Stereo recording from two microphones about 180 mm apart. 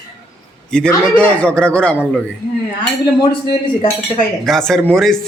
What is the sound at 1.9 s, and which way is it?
Speech, 5° right (ahead or behind).